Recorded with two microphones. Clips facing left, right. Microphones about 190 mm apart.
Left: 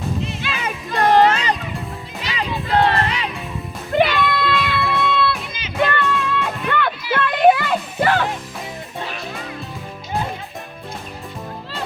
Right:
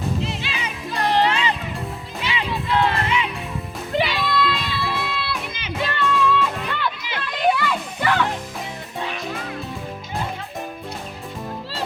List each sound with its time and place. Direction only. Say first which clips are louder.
0.4 s music: left 3 dB; 50° left (ahead or behind)
3.9 s music: left 4 dB; 55° left (ahead or behind)
7.3 s a sound: left 6 dB; 55° left (ahead or behind)